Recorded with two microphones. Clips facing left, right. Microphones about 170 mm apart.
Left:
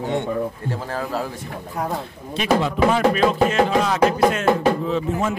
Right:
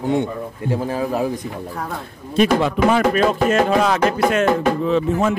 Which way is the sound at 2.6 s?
55° right (ahead or behind).